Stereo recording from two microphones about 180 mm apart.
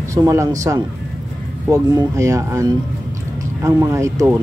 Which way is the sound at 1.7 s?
15° right (ahead or behind).